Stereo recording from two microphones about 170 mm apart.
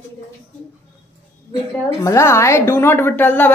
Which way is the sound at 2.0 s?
15° left (ahead or behind).